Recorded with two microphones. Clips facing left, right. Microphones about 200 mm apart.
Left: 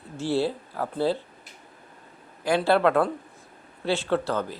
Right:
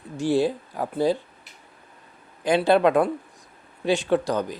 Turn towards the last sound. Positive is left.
turn(degrees=-15)  # may be behind; listen again after turning